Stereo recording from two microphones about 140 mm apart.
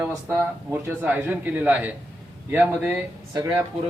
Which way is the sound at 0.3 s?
15° right (ahead or behind).